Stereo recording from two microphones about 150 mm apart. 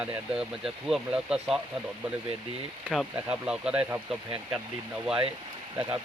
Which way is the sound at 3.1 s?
10° right (ahead or behind).